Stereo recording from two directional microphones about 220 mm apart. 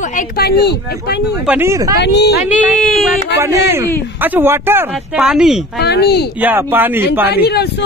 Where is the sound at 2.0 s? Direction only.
50° left (ahead or behind).